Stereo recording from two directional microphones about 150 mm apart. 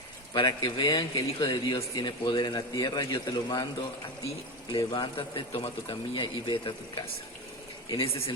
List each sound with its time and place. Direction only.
0.3 s a man's voice: 30° left (ahead or behind)
4.9 s speech: 35° left (ahead or behind)